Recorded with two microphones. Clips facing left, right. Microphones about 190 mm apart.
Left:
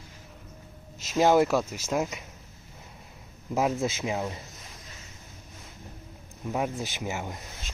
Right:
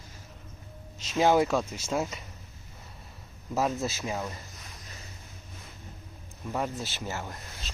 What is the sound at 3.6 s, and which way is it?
Speech, 15° left (ahead or behind).